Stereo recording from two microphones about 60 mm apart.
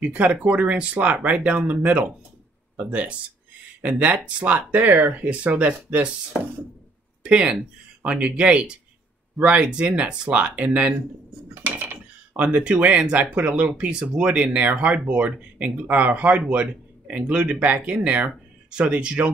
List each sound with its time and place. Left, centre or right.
0.0 s speech: right
11.6 s a sound: right
12.4 s speech: right